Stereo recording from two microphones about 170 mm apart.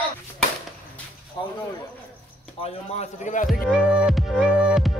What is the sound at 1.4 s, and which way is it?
Speech, 25° left (ahead or behind).